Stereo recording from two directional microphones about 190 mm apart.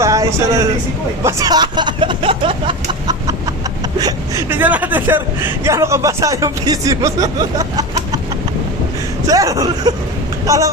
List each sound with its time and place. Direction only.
0.0 s a sound: 15° right (ahead or behind)
1.2 s speech: 20° right (ahead or behind)
4.0 s a woman's voice: 10° right (ahead or behind)
9.2 s a woman's voice: 15° right (ahead or behind)